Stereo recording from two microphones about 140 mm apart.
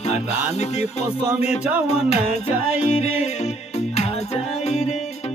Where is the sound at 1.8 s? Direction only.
50° left (ahead or behind).